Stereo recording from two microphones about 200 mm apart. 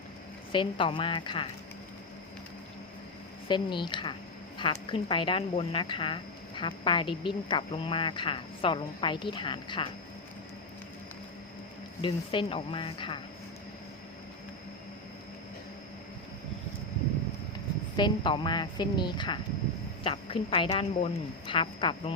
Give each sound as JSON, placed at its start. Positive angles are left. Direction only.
{"t": 0.5, "sound": "a woman's voice", "side_deg": 25}
{"t": 3.5, "sound": "a woman's voice", "side_deg": 25}
{"t": 12.0, "sound": "a woman's voice", "side_deg": 25}
{"t": 17.9, "sound": "a woman's voice", "side_deg": 25}